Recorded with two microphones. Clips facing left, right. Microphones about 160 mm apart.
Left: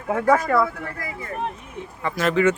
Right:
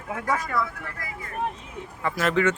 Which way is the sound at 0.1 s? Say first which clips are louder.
Left 9 dB; 55° left (ahead or behind).